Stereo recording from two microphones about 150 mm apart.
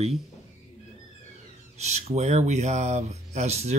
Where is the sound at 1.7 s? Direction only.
45° right (ahead or behind).